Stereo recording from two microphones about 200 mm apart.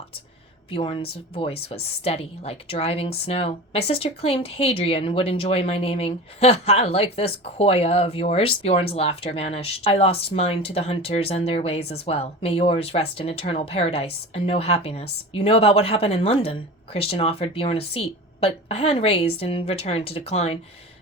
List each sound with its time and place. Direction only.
0.7 s a woman's voice: 25° left (ahead or behind)